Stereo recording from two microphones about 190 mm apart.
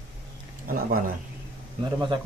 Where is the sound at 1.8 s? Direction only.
25° right (ahead or behind).